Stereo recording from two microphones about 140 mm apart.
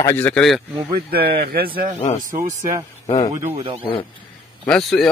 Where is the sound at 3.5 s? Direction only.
40° right (ahead or behind).